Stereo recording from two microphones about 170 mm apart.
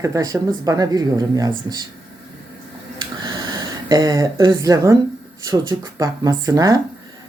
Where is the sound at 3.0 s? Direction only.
25° right (ahead or behind).